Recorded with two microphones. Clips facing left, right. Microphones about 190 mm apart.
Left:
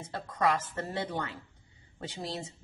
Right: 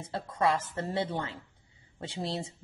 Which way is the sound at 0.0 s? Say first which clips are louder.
Right 1 dB; 30° right (ahead or behind).